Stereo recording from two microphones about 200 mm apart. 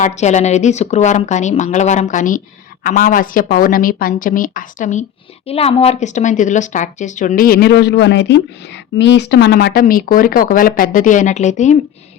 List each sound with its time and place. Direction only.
0.0 s a woman's voice: 35° left (ahead or behind)